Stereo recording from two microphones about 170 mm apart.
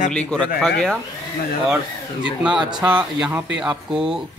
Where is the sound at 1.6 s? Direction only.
5° right (ahead or behind).